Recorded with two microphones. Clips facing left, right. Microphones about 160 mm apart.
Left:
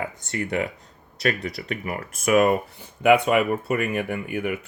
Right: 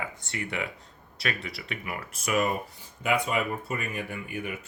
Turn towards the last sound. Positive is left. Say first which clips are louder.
# left 8 dB
turn(degrees=65)  # may be behind; listen again after turning